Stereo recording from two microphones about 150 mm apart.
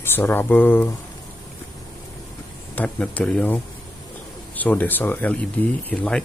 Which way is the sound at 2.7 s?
10° left (ahead or behind).